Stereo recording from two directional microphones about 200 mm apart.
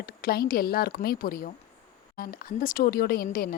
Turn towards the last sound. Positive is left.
turn(degrees=45)  # may be behind; listen again after turning